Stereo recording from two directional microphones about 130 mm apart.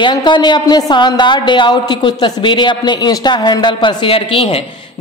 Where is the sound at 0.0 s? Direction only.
35° left (ahead or behind).